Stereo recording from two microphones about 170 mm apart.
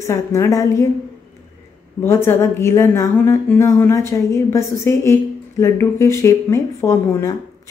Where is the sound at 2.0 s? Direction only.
15° left (ahead or behind).